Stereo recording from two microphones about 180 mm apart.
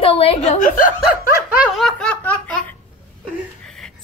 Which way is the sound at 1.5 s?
5° right (ahead or behind).